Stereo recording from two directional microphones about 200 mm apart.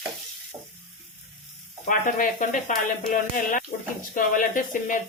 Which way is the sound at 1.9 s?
40° left (ahead or behind).